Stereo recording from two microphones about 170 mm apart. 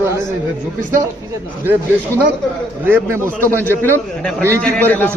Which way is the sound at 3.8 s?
10° left (ahead or behind).